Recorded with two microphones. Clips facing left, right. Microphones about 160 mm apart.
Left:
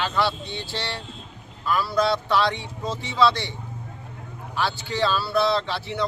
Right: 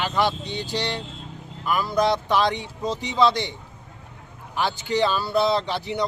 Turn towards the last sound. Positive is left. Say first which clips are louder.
# right 1 dB
turn(degrees=-15)  # may be behind; listen again after turning